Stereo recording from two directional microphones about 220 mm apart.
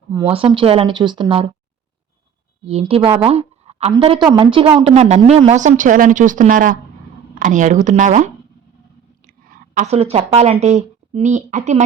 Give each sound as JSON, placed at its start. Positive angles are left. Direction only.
{"t": 0.1, "sound": "speech", "side_deg": -20}
{"t": 2.6, "sound": "a woman's voice", "side_deg": -25}